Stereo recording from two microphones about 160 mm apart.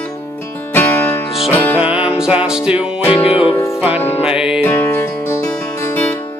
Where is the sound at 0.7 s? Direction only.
10° left (ahead or behind).